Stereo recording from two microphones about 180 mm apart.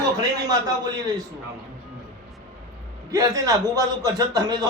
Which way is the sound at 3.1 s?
20° right (ahead or behind).